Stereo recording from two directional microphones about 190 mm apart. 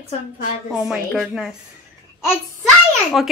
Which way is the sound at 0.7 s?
Centre (ahead or behind).